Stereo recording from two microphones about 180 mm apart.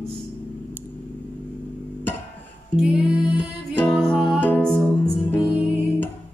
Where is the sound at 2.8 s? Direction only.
Centre (ahead or behind).